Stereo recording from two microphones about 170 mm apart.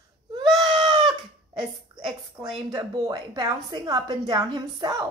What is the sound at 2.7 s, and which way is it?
A child's voice, 25° right (ahead or behind).